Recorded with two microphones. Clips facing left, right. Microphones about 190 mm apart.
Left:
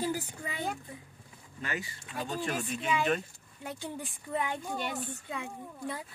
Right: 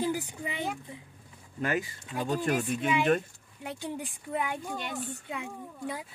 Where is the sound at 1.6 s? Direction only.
50° right (ahead or behind).